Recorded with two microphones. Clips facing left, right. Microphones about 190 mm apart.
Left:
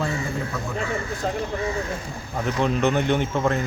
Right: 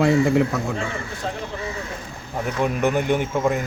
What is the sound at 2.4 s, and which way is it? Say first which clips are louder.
Speech: even; 10° right (ahead or behind).